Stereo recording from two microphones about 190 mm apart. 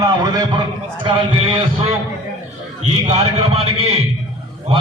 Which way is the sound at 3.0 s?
30° right (ahead or behind).